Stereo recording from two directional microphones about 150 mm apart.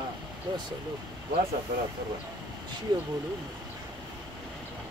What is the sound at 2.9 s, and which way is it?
Speech, 25° right (ahead or behind).